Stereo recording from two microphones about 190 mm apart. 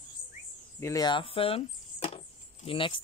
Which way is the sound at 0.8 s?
20° left (ahead or behind).